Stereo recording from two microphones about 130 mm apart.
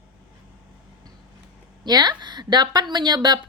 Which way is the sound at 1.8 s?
30° right (ahead or behind).